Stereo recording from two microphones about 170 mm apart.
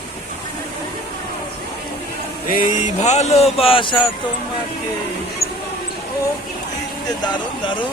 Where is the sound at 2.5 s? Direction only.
55° left (ahead or behind); by 4.1 s 30° left (ahead or behind).